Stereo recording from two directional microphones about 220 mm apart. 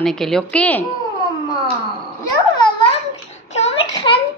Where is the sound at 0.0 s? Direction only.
Centre (ahead or behind).